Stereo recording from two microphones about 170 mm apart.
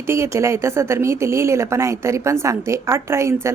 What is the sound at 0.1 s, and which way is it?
A woman's voice, 15° right (ahead or behind).